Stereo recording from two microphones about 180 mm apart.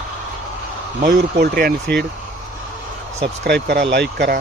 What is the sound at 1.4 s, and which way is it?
Speech, 55° right (ahead or behind).